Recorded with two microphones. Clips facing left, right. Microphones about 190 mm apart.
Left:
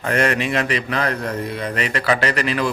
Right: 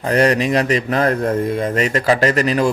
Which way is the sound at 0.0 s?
35° right (ahead or behind).